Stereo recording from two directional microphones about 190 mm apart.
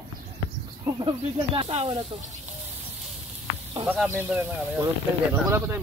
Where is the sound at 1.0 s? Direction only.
30° right (ahead or behind).